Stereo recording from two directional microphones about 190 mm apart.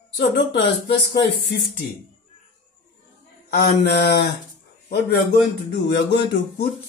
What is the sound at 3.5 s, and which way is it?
Speech, 60° left (ahead or behind).